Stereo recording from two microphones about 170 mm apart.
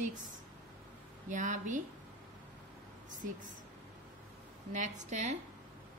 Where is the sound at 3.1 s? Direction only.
50° right (ahead or behind).